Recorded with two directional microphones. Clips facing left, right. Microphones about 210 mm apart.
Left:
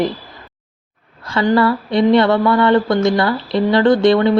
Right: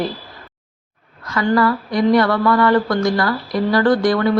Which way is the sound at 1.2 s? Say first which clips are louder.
Left 2 dB; 30° left (ahead or behind).